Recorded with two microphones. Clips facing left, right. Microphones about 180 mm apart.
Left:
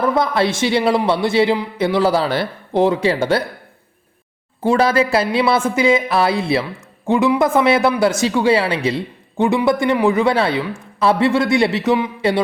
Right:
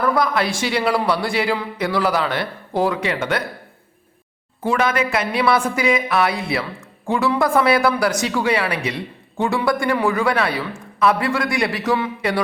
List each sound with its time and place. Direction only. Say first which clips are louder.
0.0 s speech: left 2 dB; 25° left (ahead or behind)
4.6 s speech: left 4 dB; 30° left (ahead or behind)